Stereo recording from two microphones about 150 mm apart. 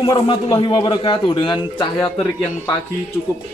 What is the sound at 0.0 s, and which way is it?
A man's voice, 30° left (ahead or behind).